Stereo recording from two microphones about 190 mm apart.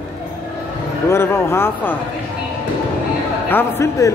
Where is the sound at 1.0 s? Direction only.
15° left (ahead or behind).